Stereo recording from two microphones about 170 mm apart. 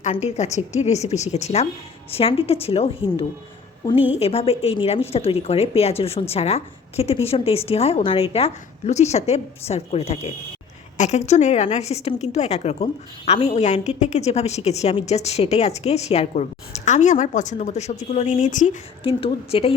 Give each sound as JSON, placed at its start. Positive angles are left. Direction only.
{"t": 0.0, "sound": "a woman's voice", "side_deg": 40}
{"t": 19.0, "sound": "a woman's voice", "side_deg": 35}